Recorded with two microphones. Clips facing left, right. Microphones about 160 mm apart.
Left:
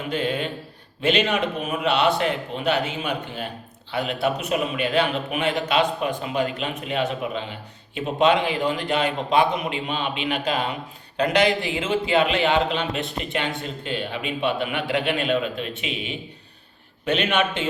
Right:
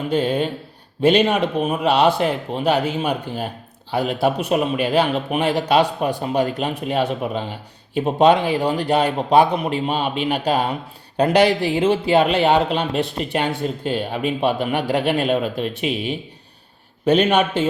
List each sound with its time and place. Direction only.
0.1 s speech: 40° right (ahead or behind)